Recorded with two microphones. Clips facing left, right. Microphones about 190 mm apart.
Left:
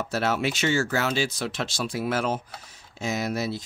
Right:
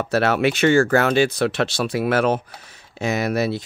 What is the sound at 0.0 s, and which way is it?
Speech, 65° right (ahead or behind).